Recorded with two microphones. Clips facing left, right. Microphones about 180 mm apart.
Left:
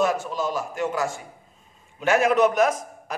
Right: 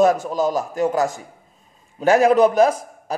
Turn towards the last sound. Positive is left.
turn(degrees=-30)  # may be behind; listen again after turning